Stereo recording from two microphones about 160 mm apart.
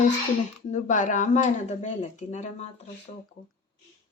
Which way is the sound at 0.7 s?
50° left (ahead or behind).